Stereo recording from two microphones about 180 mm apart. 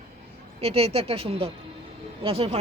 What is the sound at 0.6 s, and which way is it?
A woman's voice, 35° right (ahead or behind).